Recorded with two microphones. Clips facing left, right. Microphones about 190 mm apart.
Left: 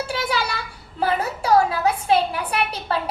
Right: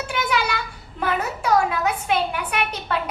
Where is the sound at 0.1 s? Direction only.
30° left (ahead or behind).